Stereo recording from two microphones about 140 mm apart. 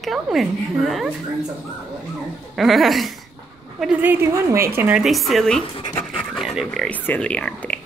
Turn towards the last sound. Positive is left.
turn(degrees=10)  # may be behind; listen again after turning